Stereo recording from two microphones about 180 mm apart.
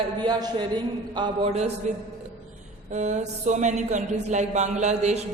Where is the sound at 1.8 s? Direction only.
40° right (ahead or behind).